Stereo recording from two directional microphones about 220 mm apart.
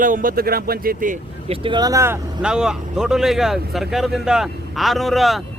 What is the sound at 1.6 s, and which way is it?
Speech, 20° right (ahead or behind).